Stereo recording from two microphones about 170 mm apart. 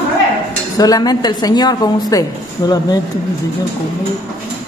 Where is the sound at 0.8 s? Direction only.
20° left (ahead or behind).